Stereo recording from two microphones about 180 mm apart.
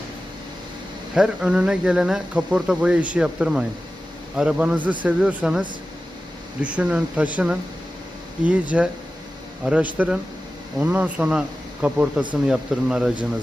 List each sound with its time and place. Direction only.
1.1 s speech: 5° right (ahead or behind)
8.7 s speech: 5° right (ahead or behind)